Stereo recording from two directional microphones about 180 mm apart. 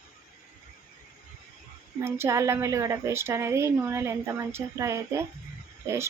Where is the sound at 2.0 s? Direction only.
15° right (ahead or behind).